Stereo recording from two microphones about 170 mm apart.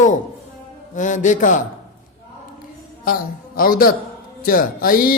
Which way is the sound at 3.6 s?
60° left (ahead or behind).